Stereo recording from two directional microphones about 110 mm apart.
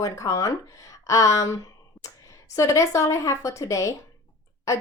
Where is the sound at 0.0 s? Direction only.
30° left (ahead or behind).